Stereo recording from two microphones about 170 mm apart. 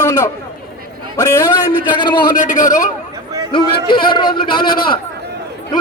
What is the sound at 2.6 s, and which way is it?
A man's voice, 20° left (ahead or behind).